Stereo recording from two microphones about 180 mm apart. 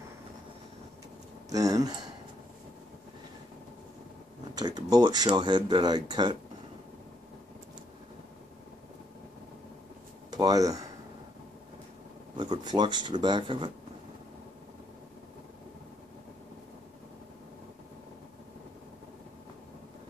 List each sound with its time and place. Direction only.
1.5 s speech: 20° right (ahead or behind)
4.6 s speech: 20° right (ahead or behind)
10.3 s speech: 20° right (ahead or behind)
12.4 s speech: 25° right (ahead or behind)